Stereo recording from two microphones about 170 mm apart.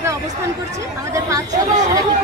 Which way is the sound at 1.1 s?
20° right (ahead or behind).